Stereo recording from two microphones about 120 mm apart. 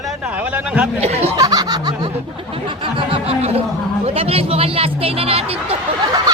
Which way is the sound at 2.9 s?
50° right (ahead or behind).